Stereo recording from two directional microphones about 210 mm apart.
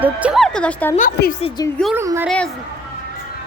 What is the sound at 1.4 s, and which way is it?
Speech, 20° left (ahead or behind).